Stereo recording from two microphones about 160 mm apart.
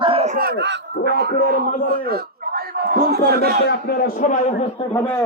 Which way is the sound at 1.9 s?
70° right (ahead or behind).